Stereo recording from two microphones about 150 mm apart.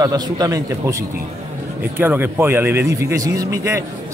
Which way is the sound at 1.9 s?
15° right (ahead or behind).